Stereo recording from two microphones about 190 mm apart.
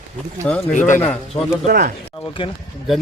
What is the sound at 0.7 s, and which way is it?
Speech, 40° left (ahead or behind).